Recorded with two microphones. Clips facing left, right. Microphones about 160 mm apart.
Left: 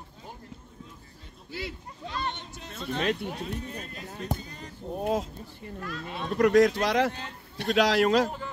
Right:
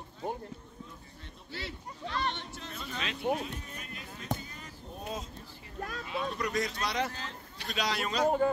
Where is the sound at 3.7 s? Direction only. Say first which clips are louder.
Left 6 dB; 35° left (ahead or behind).